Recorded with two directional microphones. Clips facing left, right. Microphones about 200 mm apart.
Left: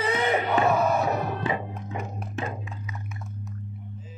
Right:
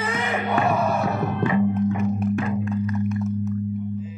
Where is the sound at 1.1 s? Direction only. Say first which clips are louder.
Right 4 dB; 20° left (ahead or behind).